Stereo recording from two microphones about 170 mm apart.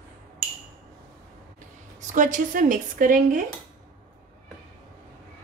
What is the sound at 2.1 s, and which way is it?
Speech, 50° right (ahead or behind).